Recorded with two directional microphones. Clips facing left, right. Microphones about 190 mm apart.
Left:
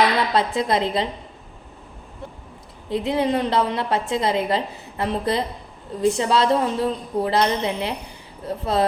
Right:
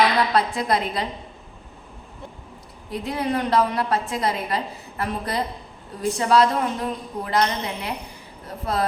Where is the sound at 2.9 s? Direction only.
25° left (ahead or behind).